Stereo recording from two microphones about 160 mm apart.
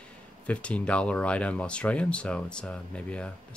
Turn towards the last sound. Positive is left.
turn(degrees=5)  # may be behind; listen again after turning